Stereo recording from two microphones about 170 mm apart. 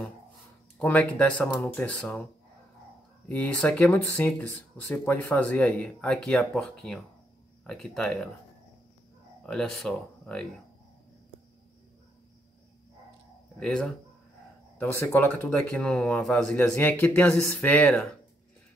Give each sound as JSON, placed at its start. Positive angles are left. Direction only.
{"t": 0.7, "sound": "speech", "side_deg": 10}
{"t": 3.3, "sound": "speech", "side_deg": 5}
{"t": 9.5, "sound": "speech", "side_deg": 5}
{"t": 13.6, "sound": "speech", "side_deg": 5}